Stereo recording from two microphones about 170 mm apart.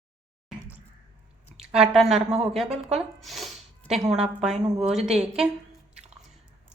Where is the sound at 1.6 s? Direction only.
5° right (ahead or behind).